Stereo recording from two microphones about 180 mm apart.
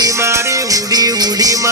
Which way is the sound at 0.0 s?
15° right (ahead or behind).